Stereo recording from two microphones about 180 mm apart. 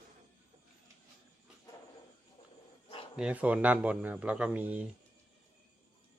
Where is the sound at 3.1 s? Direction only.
5° right (ahead or behind).